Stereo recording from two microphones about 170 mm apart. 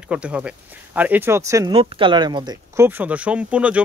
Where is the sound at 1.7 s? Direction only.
30° right (ahead or behind).